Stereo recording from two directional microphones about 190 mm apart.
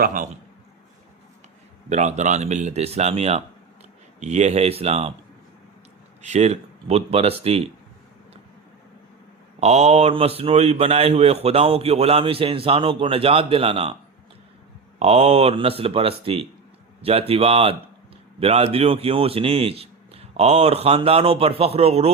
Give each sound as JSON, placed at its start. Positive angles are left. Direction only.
{"t": 0.0, "sound": "a man's voice", "side_deg": -45}
{"t": 1.9, "sound": "a man's voice", "side_deg": -40}
{"t": 6.2, "sound": "a man's voice", "side_deg": -35}
{"t": 9.6, "sound": "a man's voice", "side_deg": -35}
{"t": 14.9, "sound": "a man's voice", "side_deg": -35}